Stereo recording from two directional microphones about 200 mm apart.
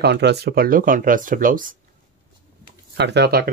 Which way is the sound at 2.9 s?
60° right (ahead or behind).